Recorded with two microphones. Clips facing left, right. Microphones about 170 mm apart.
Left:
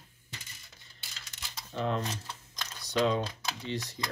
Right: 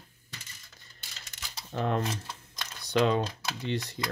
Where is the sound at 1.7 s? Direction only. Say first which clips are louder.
Right 2 dB; 55° right (ahead or behind).